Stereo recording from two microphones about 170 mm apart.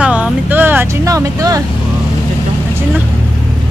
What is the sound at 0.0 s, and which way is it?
Vehicle, 5° right (ahead or behind).